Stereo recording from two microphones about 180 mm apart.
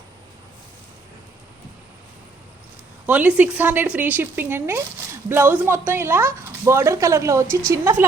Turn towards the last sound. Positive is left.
turn(degrees=-15)  # may be behind; listen again after turning